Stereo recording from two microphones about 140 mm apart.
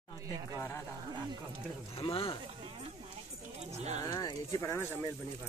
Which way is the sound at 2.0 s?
40° left (ahead or behind).